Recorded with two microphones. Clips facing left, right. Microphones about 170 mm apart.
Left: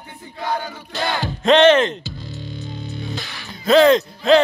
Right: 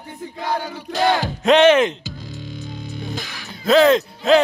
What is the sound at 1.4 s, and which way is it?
Music, 10° right (ahead or behind).